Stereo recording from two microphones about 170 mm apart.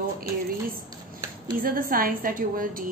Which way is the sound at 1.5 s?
55° right (ahead or behind).